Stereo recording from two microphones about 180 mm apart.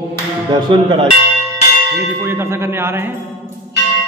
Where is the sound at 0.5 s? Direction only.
25° right (ahead or behind).